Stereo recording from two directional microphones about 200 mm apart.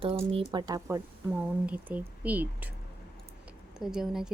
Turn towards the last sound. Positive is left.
turn(degrees=0)  # may be behind; listen again after turning